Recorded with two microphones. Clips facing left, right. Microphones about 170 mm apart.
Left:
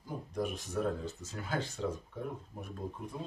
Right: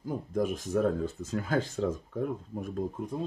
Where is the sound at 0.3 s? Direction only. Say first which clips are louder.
Right 7 dB; 50° right (ahead or behind).